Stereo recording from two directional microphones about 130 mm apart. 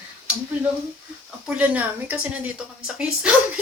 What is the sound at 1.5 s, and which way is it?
Speech, 10° right (ahead or behind).